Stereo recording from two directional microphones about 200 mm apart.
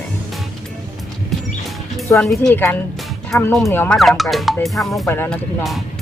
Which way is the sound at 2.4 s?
5° left (ahead or behind).